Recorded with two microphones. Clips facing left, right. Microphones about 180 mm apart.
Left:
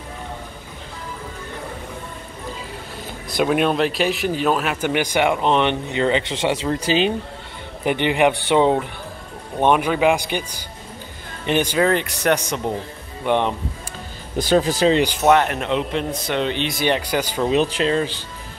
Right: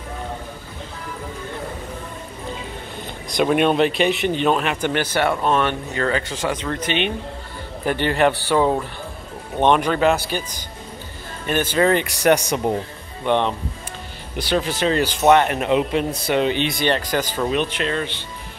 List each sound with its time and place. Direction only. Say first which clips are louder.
3.3 s speech: right 1 dB; centre (ahead or behind); by 7.2 s 30° left (ahead or behind)
7.8 s speech: left 1 dB; 15° left (ahead or behind)
9.6 s speech: even; 10° left (ahead or behind)
11.4 s speech: left 2 dB; 15° left (ahead or behind)
11.8 s speech: right 2 dB; centre (ahead or behind)
13.2 s speech: even; 10° left (ahead or behind)
14.3 s speech: left 4 dB; 40° left (ahead or behind)
14.9 s speech: left 2 dB; 20° left (ahead or behind)
15.2 s speech: right 3 dB; centre (ahead or behind)
16.8 s speech: left 2 dB; 10° left (ahead or behind)
17.5 s speech: left 4 dB; 30° left (ahead or behind)